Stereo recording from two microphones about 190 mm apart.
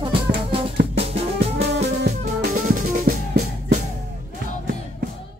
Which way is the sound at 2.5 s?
45° right (ahead or behind).